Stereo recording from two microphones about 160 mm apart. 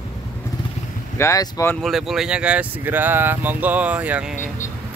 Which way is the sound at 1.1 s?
20° left (ahead or behind).